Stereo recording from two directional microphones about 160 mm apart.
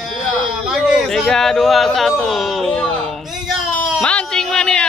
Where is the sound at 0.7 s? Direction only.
5° right (ahead or behind).